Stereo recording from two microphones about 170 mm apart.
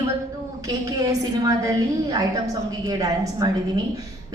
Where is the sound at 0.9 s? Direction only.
20° right (ahead or behind).